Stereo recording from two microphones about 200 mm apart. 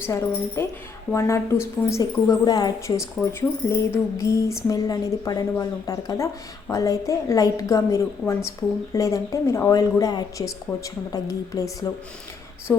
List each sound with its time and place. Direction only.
0.0 s a woman's voice: 15° left (ahead or behind)